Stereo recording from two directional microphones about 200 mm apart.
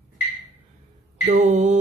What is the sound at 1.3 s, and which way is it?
Mantra, 35° right (ahead or behind).